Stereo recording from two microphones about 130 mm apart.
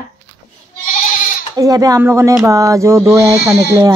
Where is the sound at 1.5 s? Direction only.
30° right (ahead or behind).